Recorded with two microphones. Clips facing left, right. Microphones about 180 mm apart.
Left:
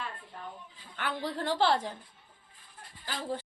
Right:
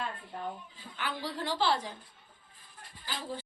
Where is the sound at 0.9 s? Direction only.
55° left (ahead or behind).